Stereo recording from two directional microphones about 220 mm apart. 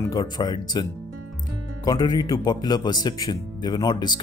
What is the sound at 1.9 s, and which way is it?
Speech, 15° left (ahead or behind).